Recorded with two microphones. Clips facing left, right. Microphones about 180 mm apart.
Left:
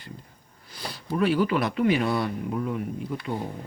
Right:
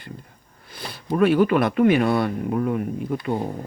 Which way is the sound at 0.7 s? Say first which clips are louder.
Right 1 dB; 55° right (ahead or behind).